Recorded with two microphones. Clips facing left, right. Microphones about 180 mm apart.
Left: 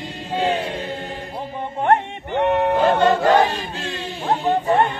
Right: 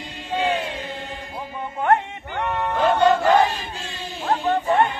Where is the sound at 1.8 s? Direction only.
25° left (ahead or behind).